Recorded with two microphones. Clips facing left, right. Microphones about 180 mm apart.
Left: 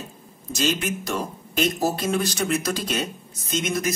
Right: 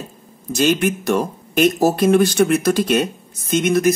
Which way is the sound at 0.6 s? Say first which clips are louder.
Right 8 dB; 55° right (ahead or behind).